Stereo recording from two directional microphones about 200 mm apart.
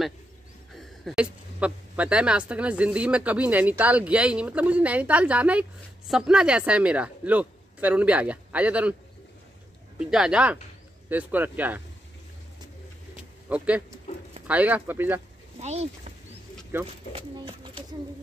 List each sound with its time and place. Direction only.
0.7 s speech: centre (ahead or behind)
9.9 s speech: 5° right (ahead or behind)
13.1 s bird: 5° right (ahead or behind)
14.5 s speech: 10° right (ahead or behind)
15.6 s speech: 30° right (ahead or behind)
17.1 s speech: 25° right (ahead or behind)